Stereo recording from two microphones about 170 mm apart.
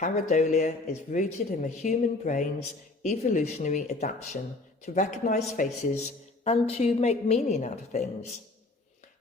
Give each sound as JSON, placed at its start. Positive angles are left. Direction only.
{"t": 0.0, "sound": "a woman's voice", "side_deg": 45}